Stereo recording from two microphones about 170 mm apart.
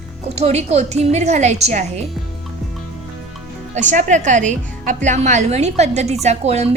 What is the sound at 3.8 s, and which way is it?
A woman's voice, 45° right (ahead or behind).